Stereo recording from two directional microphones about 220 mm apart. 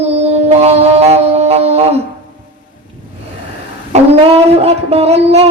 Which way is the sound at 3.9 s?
25° right (ahead or behind).